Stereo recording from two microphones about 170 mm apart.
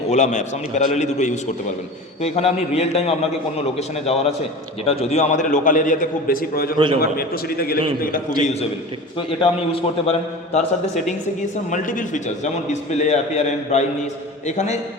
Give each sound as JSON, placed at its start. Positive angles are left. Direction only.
{"t": 0.1, "sound": "a man's voice", "side_deg": 45}
{"t": 9.1, "sound": "a man's voice", "side_deg": 30}
{"t": 11.7, "sound": "a man's voice", "side_deg": 50}